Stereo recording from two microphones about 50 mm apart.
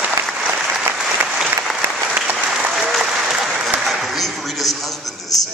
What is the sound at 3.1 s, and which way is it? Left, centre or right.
Applause, centre.